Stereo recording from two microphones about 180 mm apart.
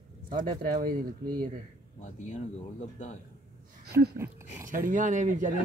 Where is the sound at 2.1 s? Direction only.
40° left (ahead or behind).